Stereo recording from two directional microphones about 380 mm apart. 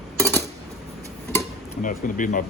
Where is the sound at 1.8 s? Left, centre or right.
Left.